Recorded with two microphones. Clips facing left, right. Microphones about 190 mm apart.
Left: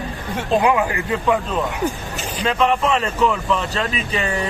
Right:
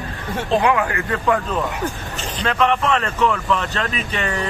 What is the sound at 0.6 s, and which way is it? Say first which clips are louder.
Speech: left 1 dB; 20° left (ahead or behind).